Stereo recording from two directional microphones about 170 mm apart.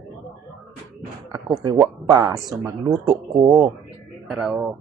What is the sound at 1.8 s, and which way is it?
Speech, 20° right (ahead or behind).